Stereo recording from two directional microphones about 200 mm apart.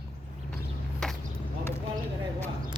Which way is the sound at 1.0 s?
Centre (ahead or behind).